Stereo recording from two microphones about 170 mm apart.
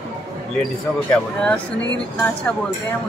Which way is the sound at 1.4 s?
10° left (ahead or behind).